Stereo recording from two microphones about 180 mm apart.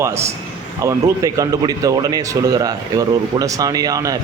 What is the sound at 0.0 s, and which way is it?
A man's voice, 15° right (ahead or behind).